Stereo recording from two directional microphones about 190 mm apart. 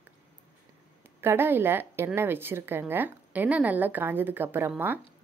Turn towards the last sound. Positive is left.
turn(degrees=-10)  # may be behind; listen again after turning